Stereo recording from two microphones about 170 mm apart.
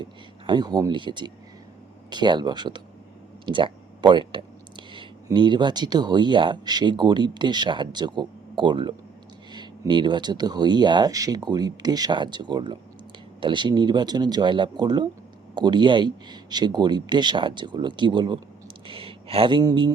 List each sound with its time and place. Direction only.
0.0 s speech: 25° right (ahead or behind)